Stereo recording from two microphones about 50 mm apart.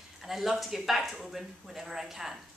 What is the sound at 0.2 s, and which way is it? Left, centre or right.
A woman's voice, centre.